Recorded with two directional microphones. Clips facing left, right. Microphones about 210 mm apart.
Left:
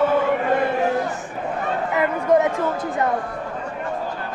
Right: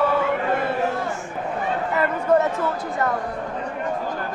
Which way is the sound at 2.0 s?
15° left (ahead or behind).